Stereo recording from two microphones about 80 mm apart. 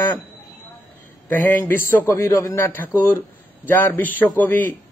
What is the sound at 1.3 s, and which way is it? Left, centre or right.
A man's voice, left.